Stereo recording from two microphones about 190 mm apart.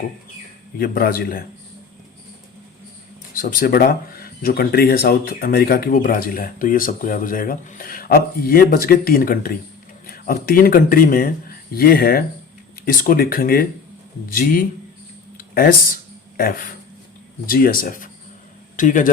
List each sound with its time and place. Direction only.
0.8 s speech: 55° left (ahead or behind)
3.3 s speech: 50° left (ahead or behind)